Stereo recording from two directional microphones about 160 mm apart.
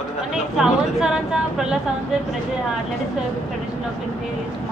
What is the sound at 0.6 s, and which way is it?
A woman's voice, 5° right (ahead or behind).